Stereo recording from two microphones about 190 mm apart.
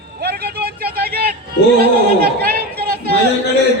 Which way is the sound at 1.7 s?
55° right (ahead or behind).